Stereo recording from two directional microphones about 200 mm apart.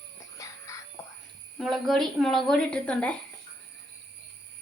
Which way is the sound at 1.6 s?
Centre (ahead or behind).